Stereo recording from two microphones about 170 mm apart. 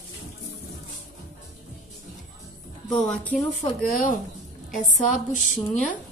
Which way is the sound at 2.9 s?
5° left (ahead or behind).